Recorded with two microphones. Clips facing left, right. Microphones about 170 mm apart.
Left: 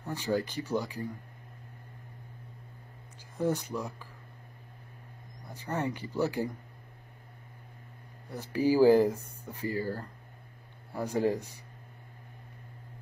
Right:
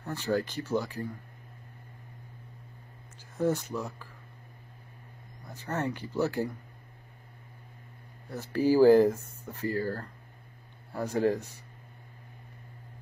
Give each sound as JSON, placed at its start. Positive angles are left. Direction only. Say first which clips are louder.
{"t": 0.0, "sound": "speech", "louder": "right 1 dB", "side_deg": 10}
{"t": 3.3, "sound": "speech", "louder": "right 2 dB", "side_deg": 10}
{"t": 5.4, "sound": "speech", "louder": "even", "side_deg": 10}
{"t": 8.3, "sound": "speech", "louder": "right 1 dB", "side_deg": 10}